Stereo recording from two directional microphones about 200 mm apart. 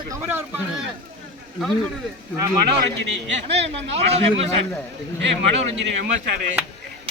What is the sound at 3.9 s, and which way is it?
Speech, 30° right (ahead or behind).